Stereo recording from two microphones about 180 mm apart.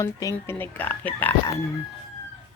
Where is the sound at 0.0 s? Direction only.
20° left (ahead or behind).